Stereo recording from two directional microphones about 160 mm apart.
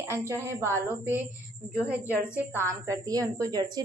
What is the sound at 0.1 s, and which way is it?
Speech, 15° right (ahead or behind).